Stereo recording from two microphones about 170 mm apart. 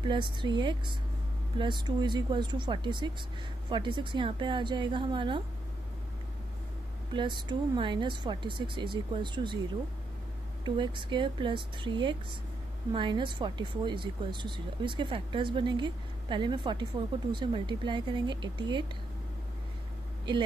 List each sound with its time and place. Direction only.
0.0 s speech: 30° right (ahead or behind)
7.2 s speech: 25° right (ahead or behind)
10.6 s speech: 25° right (ahead or behind)